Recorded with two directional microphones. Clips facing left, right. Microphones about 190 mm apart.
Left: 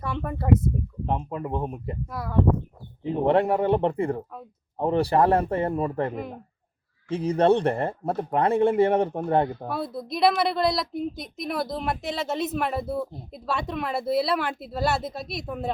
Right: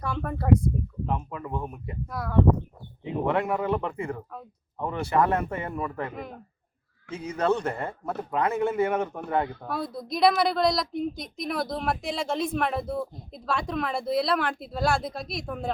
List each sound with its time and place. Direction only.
0.0 s speech: 5° left (ahead or behind)
1.0 s speech: 30° left (ahead or behind)
2.0 s a woman's voice: centre (ahead or behind)
3.0 s speech: 35° left (ahead or behind)
9.6 s a woman's voice: centre (ahead or behind)